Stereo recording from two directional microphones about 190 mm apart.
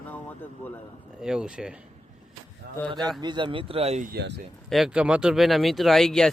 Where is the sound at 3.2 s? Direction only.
25° right (ahead or behind).